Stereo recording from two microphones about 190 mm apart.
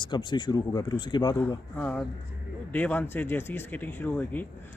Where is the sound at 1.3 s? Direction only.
10° left (ahead or behind).